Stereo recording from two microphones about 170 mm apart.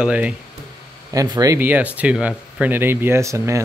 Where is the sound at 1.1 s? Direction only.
20° right (ahead or behind).